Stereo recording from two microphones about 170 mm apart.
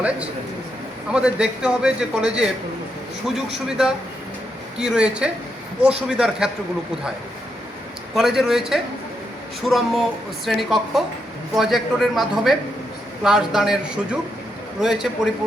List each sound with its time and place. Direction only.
1.1 s a man's voice: 5° right (ahead or behind)
8.1 s a man's voice: centre (ahead or behind)